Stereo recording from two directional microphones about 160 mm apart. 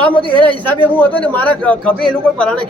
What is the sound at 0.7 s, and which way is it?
A man's voice, 10° left (ahead or behind).